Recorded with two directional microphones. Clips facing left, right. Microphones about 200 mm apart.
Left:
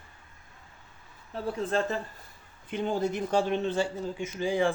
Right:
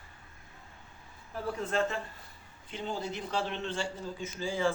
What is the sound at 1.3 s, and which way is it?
Speech, 30° left (ahead or behind).